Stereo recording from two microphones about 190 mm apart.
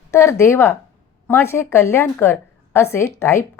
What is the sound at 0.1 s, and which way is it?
A woman's voice, 15° left (ahead or behind).